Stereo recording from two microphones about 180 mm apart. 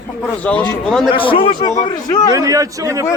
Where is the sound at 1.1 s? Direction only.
30° left (ahead or behind).